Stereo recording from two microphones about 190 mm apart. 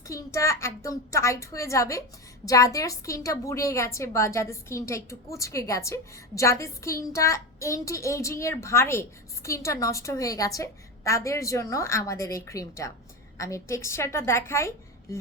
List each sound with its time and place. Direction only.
0.1 s a woman's voice: 15° left (ahead or behind)